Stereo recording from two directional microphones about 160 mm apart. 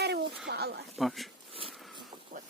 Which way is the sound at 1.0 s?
Centre (ahead or behind).